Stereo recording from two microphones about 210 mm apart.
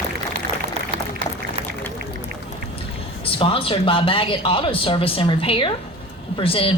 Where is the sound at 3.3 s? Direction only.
25° left (ahead or behind).